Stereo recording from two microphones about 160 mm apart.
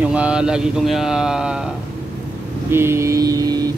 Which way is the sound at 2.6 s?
15° right (ahead or behind).